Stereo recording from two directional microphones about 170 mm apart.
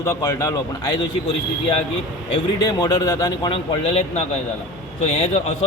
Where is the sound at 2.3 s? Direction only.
20° left (ahead or behind).